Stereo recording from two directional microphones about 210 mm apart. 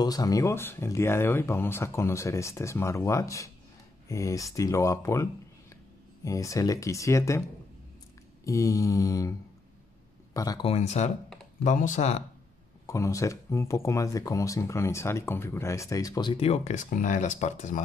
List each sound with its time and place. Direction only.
0.0 s speech: 15° left (ahead or behind)
8.5 s speech: 15° left (ahead or behind)
10.3 s speech: 15° left (ahead or behind)
10.7 s speech: 30° left (ahead or behind)
12.8 s speech: 15° left (ahead or behind); by 17.8 s 35° left (ahead or behind)